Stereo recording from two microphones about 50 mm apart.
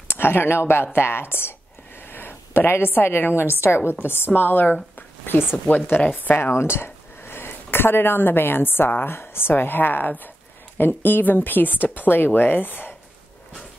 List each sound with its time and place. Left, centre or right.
0.1 s a woman's voice: left
6.5 s speech: left